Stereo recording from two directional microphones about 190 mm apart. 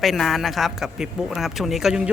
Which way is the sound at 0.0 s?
Centre (ahead or behind).